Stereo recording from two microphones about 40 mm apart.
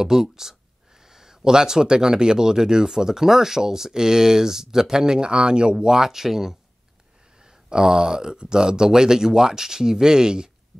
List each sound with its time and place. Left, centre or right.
0.0 s speech: centre